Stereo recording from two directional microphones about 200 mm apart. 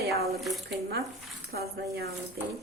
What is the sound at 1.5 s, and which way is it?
Speech, 50° right (ahead or behind).